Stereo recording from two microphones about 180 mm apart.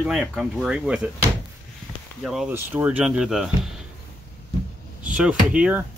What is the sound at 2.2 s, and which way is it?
Speech, centre (ahead or behind).